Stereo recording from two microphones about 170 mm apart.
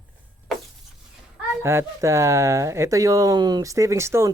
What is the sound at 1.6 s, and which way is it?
Speech, 15° right (ahead or behind).